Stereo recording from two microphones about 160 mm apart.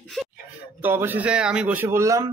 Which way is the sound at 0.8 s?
10° right (ahead or behind).